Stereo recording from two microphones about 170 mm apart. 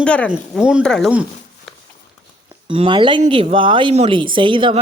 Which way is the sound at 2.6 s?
30° right (ahead or behind).